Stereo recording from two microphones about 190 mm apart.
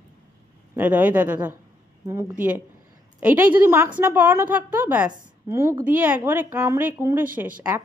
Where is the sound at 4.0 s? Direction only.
10° right (ahead or behind).